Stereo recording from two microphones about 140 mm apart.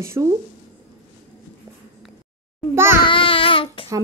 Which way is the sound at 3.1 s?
40° left (ahead or behind).